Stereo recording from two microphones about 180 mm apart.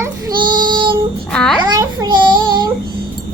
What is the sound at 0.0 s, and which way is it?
Child singing, 25° right (ahead or behind).